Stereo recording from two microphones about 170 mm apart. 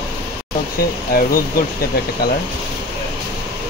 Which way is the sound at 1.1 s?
60° left (ahead or behind).